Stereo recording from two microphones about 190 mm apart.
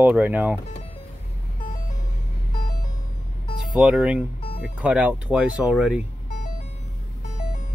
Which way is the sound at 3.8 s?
5° right (ahead or behind).